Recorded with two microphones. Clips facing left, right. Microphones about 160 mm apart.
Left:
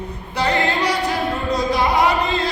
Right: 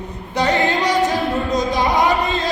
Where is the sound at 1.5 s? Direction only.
20° right (ahead or behind).